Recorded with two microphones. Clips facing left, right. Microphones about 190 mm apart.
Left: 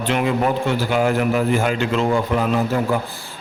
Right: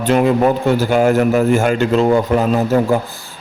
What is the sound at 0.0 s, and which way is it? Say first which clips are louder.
A man's voice: right 6 dB; 45° right (ahead or behind).